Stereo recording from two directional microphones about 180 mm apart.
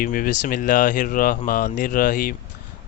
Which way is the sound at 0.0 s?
50° left (ahead or behind).